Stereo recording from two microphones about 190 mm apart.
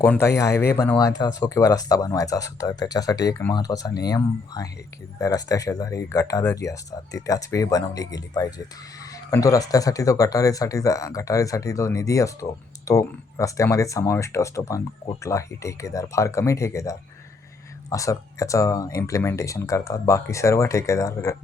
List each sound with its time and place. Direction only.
0.0 s speech: 10° left (ahead or behind)